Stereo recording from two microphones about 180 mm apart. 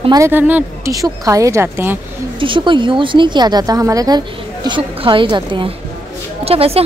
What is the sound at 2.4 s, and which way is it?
A woman's voice, 25° right (ahead or behind).